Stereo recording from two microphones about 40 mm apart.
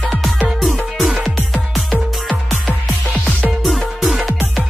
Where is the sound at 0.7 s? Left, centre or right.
Centre.